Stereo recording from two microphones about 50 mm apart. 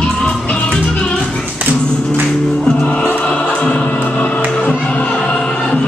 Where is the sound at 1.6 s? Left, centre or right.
Right.